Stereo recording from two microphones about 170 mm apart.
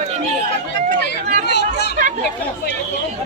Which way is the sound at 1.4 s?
80° left.